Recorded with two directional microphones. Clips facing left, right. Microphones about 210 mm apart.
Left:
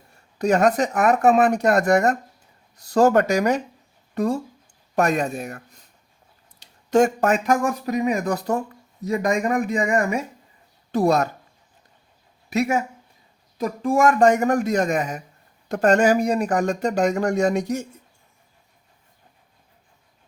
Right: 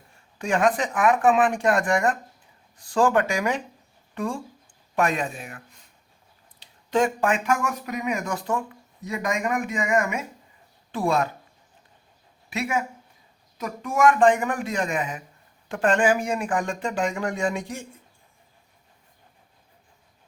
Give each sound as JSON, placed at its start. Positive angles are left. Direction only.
{"t": 0.3, "sound": "speech", "side_deg": 40}
{"t": 12.5, "sound": "speech", "side_deg": 40}